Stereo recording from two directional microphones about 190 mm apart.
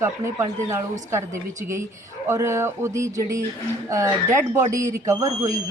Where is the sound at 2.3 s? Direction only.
15° right (ahead or behind).